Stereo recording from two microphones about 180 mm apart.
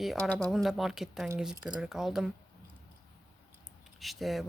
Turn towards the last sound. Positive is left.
turn(degrees=0)  # may be behind; listen again after turning